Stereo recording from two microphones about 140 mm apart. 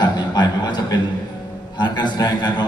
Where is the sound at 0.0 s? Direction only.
30° left (ahead or behind).